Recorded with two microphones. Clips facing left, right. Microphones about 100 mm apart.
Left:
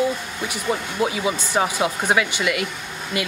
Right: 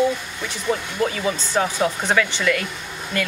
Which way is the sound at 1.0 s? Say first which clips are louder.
Even; 10° left (ahead or behind).